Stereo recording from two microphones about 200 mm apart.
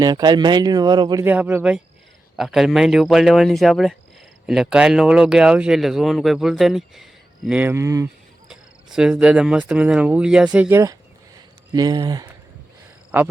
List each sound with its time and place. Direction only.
0.0 s speech: 20° right (ahead or behind)
1.2 s speech: 5° right (ahead or behind)
8.4 s speech: 5° right (ahead or behind); by 12.3 s 20° right (ahead or behind)
13.1 s speech: 10° right (ahead or behind)